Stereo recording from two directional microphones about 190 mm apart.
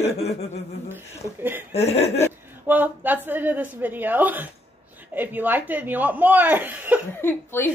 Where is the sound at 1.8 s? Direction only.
35° left (ahead or behind).